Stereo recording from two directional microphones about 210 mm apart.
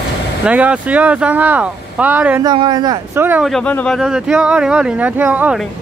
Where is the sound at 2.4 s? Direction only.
20° right (ahead or behind).